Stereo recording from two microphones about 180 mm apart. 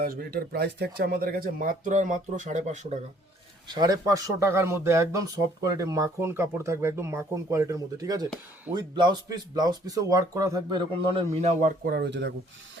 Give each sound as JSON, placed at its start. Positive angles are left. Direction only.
{"t": 0.0, "sound": "speech", "side_deg": -55}
{"t": 3.7, "sound": "speech", "side_deg": -20}
{"t": 11.1, "sound": "a man's voice", "side_deg": -30}
{"t": 11.6, "sound": "speech", "side_deg": -60}